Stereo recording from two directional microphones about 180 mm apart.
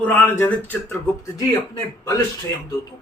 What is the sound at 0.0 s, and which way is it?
Speech, 10° left (ahead or behind).